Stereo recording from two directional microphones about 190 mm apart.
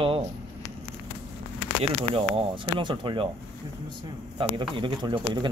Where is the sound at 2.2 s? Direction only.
30° right (ahead or behind).